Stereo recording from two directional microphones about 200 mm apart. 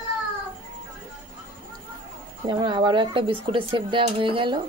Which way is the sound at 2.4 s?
20° right (ahead or behind).